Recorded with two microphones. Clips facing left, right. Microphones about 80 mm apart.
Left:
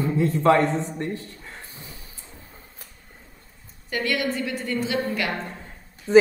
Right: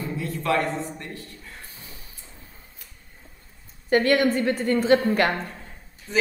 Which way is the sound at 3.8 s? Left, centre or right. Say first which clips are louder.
Right 6 dB; right.